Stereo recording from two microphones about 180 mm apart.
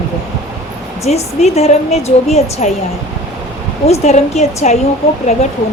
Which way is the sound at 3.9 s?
35° left (ahead or behind).